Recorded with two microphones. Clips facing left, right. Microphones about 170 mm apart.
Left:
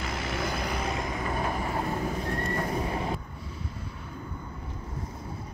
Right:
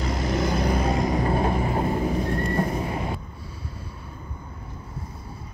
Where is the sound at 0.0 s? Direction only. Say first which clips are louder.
Right 7 dB; 40° right (ahead or behind).